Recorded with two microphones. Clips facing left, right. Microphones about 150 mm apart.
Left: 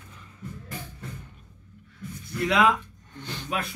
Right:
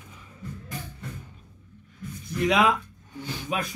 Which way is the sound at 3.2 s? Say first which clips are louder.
Right 1 dB; 10° right (ahead or behind).